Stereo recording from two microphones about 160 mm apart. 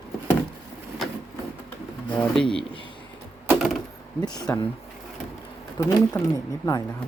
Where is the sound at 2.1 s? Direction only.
5° left (ahead or behind).